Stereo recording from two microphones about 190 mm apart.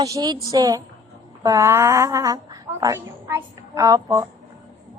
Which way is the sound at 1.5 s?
15° right (ahead or behind).